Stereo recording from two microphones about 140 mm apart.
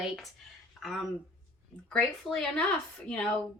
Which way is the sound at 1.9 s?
Centre (ahead or behind).